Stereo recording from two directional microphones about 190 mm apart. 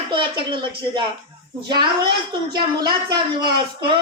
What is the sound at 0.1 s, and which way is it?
A woman's voice, 25° right (ahead or behind).